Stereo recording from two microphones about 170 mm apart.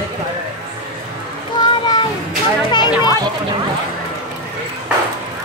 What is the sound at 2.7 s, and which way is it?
Speech, 25° left (ahead or behind).